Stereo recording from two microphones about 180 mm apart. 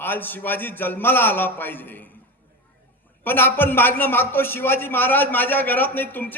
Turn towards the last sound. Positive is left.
turn(degrees=10)  # may be behind; listen again after turning